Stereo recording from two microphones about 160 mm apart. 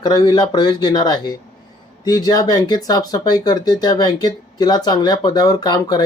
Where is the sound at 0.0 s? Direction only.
25° left (ahead or behind).